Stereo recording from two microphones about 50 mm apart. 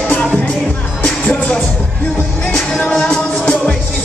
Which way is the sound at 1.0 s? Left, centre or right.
Left.